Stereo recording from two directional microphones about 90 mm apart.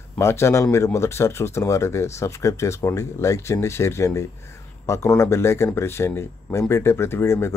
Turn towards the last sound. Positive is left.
turn(degrees=30)  # may be behind; listen again after turning